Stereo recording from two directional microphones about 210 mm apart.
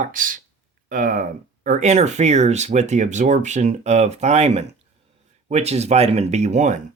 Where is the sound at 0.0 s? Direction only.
40° right (ahead or behind).